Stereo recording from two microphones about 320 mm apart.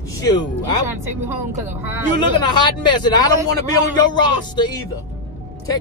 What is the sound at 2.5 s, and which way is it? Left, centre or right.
A man's voice, centre.